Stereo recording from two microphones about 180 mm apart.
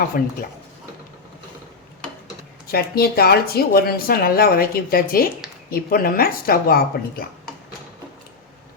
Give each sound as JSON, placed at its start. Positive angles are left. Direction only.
{"t": 0.1, "sound": "speech", "side_deg": 55}
{"t": 2.6, "sound": "speech", "side_deg": 60}